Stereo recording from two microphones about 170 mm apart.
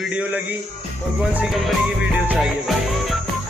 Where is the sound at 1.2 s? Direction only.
5° right (ahead or behind).